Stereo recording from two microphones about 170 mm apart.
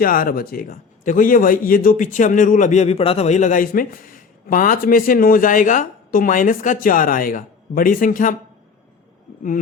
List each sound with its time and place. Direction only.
0.0 s a man's voice: 55° left (ahead or behind)